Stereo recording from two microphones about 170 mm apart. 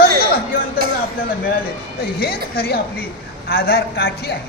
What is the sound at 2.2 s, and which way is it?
A man's voice, 65° left (ahead or behind).